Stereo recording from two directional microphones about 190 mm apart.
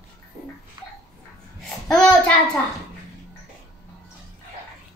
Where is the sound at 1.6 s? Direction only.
Centre (ahead or behind).